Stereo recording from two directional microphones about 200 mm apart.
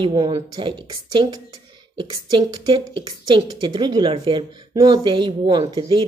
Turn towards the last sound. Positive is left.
turn(degrees=-20)  # may be behind; listen again after turning